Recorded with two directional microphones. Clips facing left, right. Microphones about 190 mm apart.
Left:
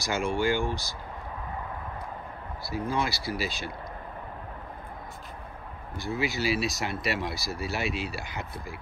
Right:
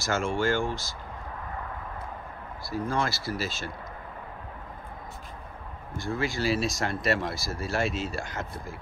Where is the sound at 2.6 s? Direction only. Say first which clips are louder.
Right 1 dB; 5° left (ahead or behind).